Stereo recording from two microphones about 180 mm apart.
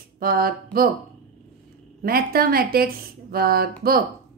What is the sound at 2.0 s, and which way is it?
A woman's voice, 55° right (ahead or behind).